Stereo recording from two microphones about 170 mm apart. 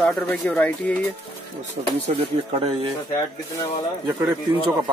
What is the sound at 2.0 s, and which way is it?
Speech, 35° right (ahead or behind).